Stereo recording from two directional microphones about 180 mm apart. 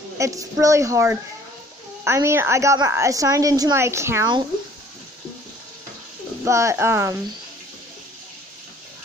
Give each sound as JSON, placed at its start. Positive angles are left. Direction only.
{"t": 0.2, "sound": "a woman's voice", "side_deg": -20}
{"t": 6.4, "sound": "a woman's voice", "side_deg": -15}